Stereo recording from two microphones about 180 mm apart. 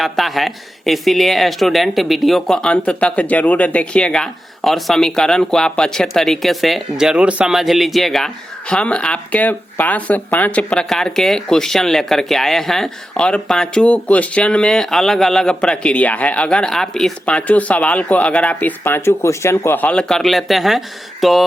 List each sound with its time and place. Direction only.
0.0 s speech: centre (ahead or behind)